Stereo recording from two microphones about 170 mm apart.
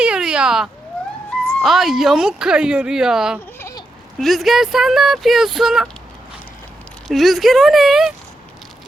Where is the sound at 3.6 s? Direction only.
15° left (ahead or behind).